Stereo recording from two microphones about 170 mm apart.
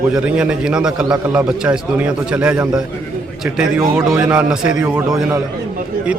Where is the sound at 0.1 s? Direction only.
5° right (ahead or behind).